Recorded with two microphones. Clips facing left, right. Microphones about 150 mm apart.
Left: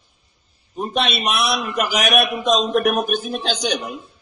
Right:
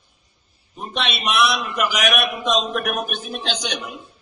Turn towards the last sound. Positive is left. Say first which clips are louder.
# left 4 dB
turn(degrees=35)  # may be behind; listen again after turning